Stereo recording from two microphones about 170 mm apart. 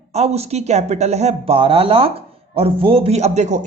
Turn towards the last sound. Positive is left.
turn(degrees=-45)  # may be behind; listen again after turning